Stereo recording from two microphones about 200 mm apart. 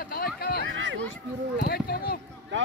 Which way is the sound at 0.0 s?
50° left (ahead or behind).